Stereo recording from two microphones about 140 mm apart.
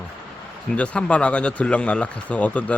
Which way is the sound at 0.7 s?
10° left (ahead or behind).